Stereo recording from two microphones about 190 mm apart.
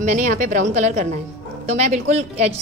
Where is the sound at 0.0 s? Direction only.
40° right (ahead or behind).